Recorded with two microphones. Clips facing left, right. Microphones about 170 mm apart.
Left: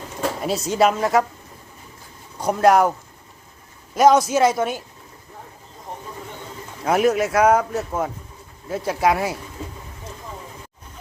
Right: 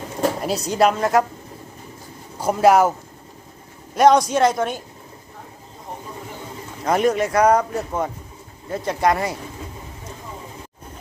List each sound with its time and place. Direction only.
0.4 s speech: centre (ahead or behind)
2.4 s speech: 5° right (ahead or behind)
3.9 s speech: 5° left (ahead or behind)
6.8 s speech: 5° left (ahead or behind)